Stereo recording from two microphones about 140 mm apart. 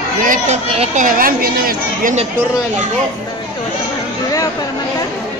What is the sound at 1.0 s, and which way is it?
A woman's voice, 90° right.